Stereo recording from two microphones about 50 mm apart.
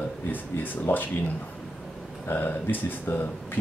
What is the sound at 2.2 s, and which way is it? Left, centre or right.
Speech, left.